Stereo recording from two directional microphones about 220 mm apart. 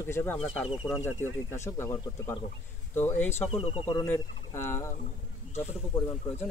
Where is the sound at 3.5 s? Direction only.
25° left (ahead or behind).